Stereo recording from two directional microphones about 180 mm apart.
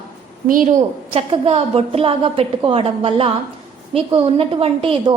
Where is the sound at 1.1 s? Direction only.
35° right (ahead or behind).